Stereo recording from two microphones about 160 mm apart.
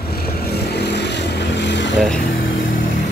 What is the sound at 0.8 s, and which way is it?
Vehicle, 90° left.